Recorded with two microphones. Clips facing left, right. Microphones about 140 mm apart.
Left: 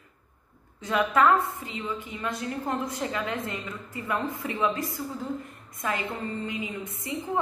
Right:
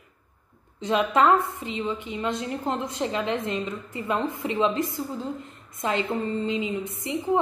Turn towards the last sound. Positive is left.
turn(degrees=-25)  # may be behind; listen again after turning